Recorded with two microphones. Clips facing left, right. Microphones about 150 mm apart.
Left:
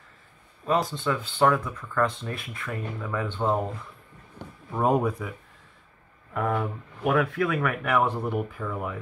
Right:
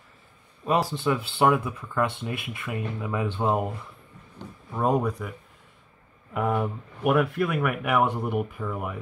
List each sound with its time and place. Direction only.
0.7 s speech: 15° right (ahead or behind)
4.7 s speech: 5° left (ahead or behind)
6.3 s speech: 10° right (ahead or behind)